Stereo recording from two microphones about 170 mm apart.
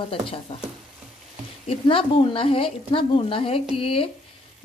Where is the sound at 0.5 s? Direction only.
35° left (ahead or behind).